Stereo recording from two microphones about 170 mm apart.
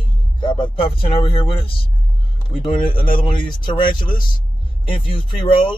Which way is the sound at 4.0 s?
30° left (ahead or behind).